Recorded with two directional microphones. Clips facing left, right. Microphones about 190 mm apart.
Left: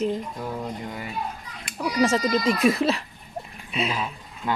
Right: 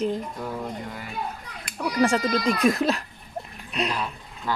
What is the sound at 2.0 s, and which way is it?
Speech, centre (ahead or behind).